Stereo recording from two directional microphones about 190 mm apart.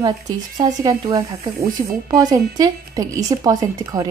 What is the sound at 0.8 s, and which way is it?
Speech, 20° right (ahead or behind).